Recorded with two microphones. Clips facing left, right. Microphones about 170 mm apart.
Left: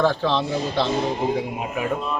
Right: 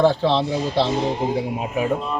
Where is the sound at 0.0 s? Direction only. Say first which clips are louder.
Right 3 dB; 25° right (ahead or behind).